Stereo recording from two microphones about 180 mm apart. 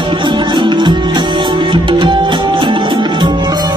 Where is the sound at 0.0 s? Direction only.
25° right (ahead or behind).